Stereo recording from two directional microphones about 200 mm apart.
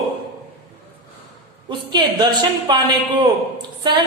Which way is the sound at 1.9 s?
20° right (ahead or behind).